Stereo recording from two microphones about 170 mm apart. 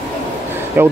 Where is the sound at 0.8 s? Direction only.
10° right (ahead or behind).